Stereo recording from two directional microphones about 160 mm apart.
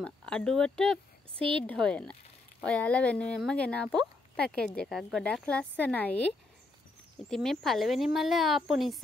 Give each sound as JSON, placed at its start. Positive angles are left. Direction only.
{"t": 0.0, "sound": "speech", "side_deg": 5}
{"t": 7.2, "sound": "speech", "side_deg": 5}